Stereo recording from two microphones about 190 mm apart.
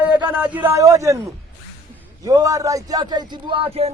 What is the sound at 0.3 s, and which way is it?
Speech, 10° right (ahead or behind).